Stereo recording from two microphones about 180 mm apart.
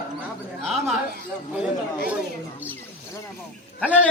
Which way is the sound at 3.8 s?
5° left (ahead or behind).